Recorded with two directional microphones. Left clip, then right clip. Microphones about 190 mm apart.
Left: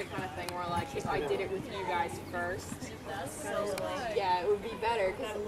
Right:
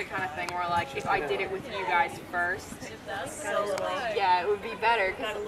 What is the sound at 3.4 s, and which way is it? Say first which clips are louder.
Speech: right 6 dB; 10° right (ahead or behind).